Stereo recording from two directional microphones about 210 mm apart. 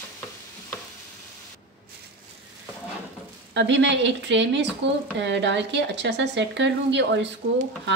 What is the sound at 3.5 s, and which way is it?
Speech, 55° right (ahead or behind).